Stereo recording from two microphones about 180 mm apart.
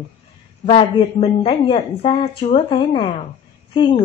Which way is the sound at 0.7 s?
35° left (ahead or behind).